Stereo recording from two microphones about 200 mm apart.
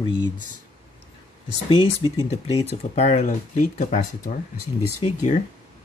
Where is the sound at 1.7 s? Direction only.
25° left (ahead or behind).